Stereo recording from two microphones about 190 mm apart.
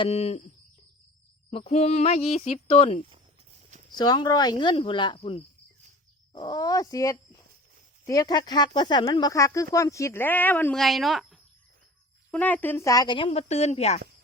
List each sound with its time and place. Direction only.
0.0 s speech: 35° left (ahead or behind)
1.5 s speech: 30° left (ahead or behind)
3.9 s speech: 20° left (ahead or behind)